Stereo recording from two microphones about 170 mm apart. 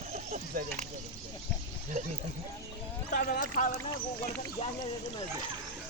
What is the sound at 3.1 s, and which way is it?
Speech, 60° left (ahead or behind).